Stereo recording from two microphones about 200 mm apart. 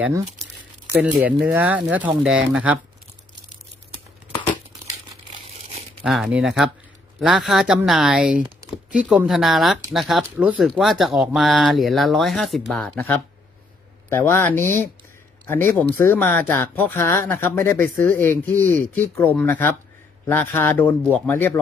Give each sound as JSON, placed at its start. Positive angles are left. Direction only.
{"t": 0.0, "sound": "speech", "side_deg": -15}
{"t": 6.0, "sound": "speech", "side_deg": 0}